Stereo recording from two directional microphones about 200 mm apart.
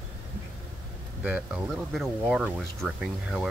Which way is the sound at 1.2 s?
5° right (ahead or behind).